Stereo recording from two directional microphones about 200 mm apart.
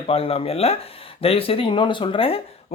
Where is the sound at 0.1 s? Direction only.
30° left (ahead or behind).